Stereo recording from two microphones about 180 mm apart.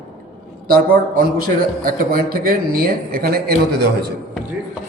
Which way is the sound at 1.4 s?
55° right (ahead or behind).